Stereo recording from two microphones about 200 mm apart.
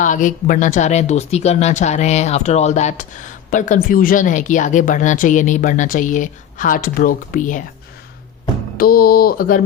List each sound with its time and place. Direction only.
0.0 s a woman's voice: 40° left (ahead or behind)
8.8 s speech: 50° left (ahead or behind)